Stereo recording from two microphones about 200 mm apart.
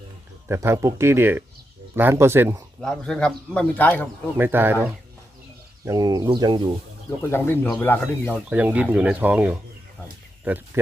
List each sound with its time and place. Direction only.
0.4 s speech: 10° right (ahead or behind)
2.8 s speech: 5° left (ahead or behind)
4.4 s speech: 10° right (ahead or behind)
7.2 s speech: 10° left (ahead or behind)
8.4 s speech: 5° right (ahead or behind)